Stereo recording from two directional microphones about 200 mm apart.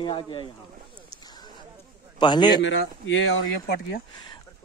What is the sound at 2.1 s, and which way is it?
Speech, 20° left (ahead or behind).